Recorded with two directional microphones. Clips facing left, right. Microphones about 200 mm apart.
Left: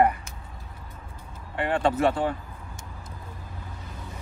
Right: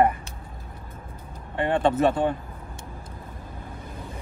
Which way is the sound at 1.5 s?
25° right (ahead or behind).